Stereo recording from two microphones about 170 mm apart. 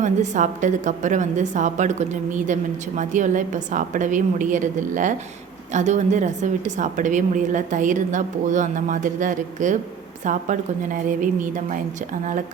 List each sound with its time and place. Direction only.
0.0 s a woman's voice: 45° right (ahead or behind)